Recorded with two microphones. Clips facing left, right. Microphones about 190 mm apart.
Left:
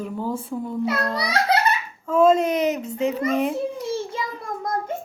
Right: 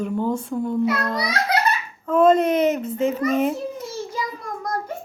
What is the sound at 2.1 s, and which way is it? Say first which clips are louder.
A woman's voice: right 1 dB; centre (ahead or behind).